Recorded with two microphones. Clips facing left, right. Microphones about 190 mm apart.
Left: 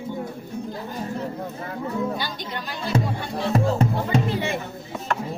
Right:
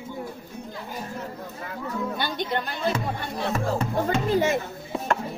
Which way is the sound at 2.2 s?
55° right (ahead or behind).